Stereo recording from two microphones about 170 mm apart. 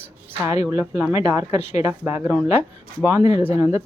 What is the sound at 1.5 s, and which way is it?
Speech, 35° left (ahead or behind).